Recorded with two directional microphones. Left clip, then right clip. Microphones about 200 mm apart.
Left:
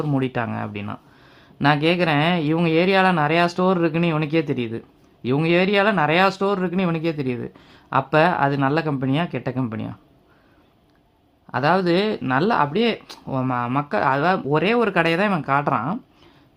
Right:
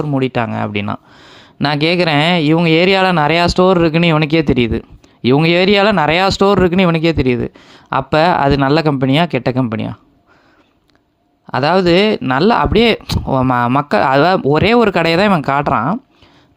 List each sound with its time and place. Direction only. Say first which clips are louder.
0.0 s speech: right 7 dB; 25° right (ahead or behind)
11.5 s speech: right 7 dB; 35° right (ahead or behind)